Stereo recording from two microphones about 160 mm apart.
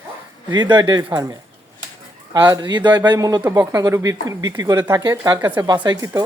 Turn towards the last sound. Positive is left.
turn(degrees=-20)  # may be behind; listen again after turning